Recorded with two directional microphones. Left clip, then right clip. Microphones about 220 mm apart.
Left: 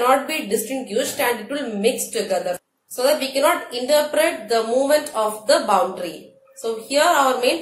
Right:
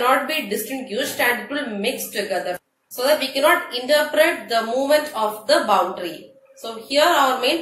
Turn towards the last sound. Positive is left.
turn(degrees=30)  # may be behind; listen again after turning